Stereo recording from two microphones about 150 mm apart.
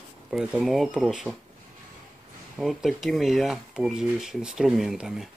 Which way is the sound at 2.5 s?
Centre (ahead or behind).